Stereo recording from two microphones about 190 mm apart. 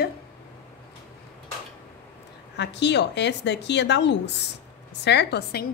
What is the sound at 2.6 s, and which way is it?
A woman's voice, 65° left (ahead or behind).